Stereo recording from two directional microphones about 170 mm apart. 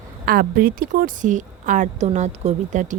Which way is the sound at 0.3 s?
60° right (ahead or behind).